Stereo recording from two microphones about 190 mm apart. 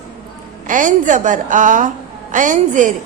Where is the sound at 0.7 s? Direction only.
40° right (ahead or behind).